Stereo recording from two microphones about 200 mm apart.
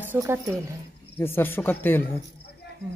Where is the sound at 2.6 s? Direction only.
60° left (ahead or behind).